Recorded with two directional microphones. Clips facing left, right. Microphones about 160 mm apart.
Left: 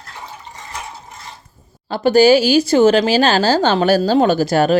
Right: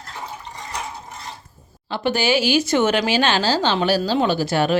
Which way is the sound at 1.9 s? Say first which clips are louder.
Left 9 dB; 40° left (ahead or behind).